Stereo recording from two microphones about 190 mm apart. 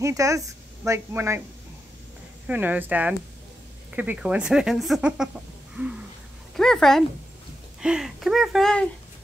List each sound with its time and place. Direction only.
0.0 s speech: 15° right (ahead or behind)
2.4 s speech: 10° right (ahead or behind)
6.5 s speech: centre (ahead or behind)